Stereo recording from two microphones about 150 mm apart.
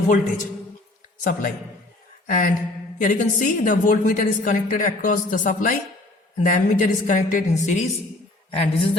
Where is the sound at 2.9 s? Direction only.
60° left (ahead or behind).